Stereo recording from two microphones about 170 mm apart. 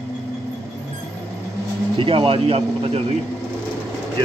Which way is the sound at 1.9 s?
30° right (ahead or behind).